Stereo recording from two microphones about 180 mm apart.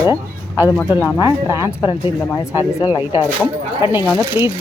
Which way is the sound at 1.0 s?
25° left (ahead or behind).